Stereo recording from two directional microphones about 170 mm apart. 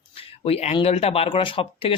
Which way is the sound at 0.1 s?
35° left (ahead or behind).